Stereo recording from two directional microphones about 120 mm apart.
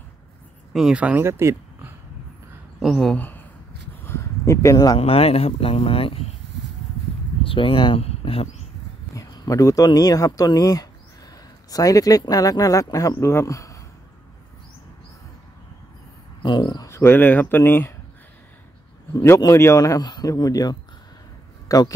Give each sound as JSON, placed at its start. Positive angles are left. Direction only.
{"t": 0.7, "sound": "speech", "side_deg": -5}
{"t": 2.8, "sound": "speech", "side_deg": 0}
{"t": 3.2, "sound": "a sound", "side_deg": 15}
{"t": 4.9, "sound": "speech", "side_deg": 55}
{"t": 7.4, "sound": "speech", "side_deg": 45}
{"t": 9.1, "sound": "speech", "side_deg": 30}
{"t": 16.4, "sound": "speech", "side_deg": 35}
{"t": 19.1, "sound": "a man's voice", "side_deg": 25}